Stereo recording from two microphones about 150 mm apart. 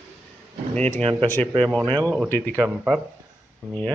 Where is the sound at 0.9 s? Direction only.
45° right (ahead or behind).